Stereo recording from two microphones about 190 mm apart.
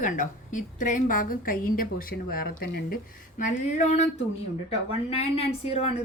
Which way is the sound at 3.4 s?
40° left (ahead or behind).